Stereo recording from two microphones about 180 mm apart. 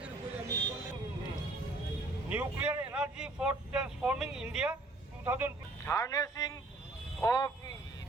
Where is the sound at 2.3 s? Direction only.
10° right (ahead or behind).